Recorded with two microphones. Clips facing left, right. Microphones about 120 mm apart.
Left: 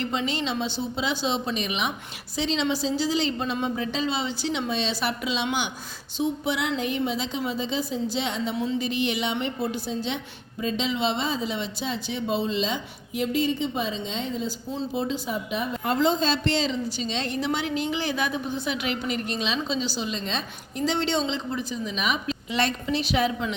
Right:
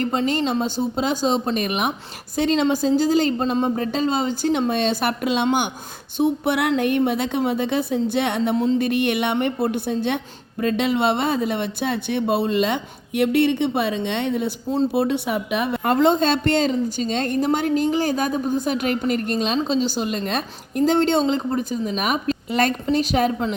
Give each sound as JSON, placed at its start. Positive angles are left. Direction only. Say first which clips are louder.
{"t": 0.0, "sound": "a woman's voice", "louder": "right 6 dB", "side_deg": -45}
{"t": 15.9, "sound": "a woman's voice", "louder": "right 5 dB", "side_deg": -50}